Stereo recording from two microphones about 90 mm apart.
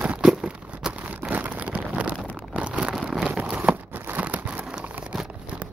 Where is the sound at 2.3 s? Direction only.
15° right (ahead or behind).